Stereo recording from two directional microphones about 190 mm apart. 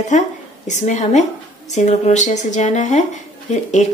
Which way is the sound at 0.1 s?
40° left (ahead or behind).